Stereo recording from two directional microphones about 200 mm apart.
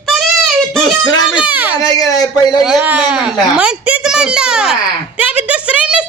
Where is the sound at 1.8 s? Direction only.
15° left (ahead or behind).